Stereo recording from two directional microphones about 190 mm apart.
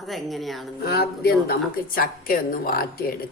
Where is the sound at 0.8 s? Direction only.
55° left (ahead or behind).